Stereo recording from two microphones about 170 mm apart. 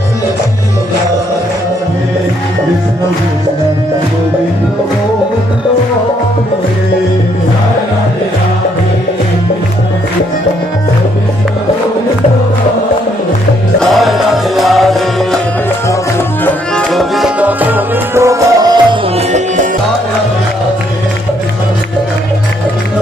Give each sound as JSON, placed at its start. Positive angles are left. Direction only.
{"t": 13.7, "sound": "music", "side_deg": 0}
{"t": 15.9, "sound": "music", "side_deg": 15}
{"t": 16.9, "sound": "music", "side_deg": 0}
{"t": 19.1, "sound": "music", "side_deg": -45}